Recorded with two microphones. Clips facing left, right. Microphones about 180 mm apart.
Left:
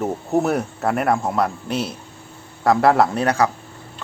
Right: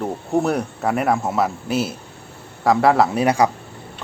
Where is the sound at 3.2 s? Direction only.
15° right (ahead or behind).